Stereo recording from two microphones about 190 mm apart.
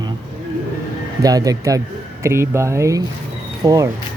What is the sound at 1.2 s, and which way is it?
Speech, 20° right (ahead or behind).